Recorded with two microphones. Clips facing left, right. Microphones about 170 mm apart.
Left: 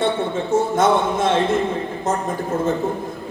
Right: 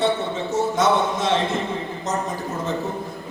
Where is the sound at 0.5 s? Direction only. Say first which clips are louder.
Left 4 dB; 55° left (ahead or behind).